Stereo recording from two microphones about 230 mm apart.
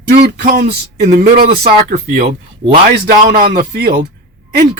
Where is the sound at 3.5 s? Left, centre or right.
Right.